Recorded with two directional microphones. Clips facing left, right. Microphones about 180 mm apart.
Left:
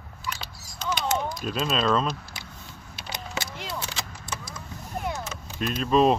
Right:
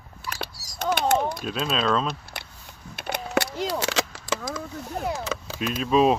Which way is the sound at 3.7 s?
85° right.